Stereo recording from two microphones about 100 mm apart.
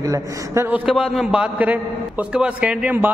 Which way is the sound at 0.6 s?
15° right (ahead or behind).